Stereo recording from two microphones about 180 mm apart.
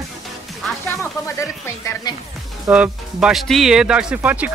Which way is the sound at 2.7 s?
5° right (ahead or behind).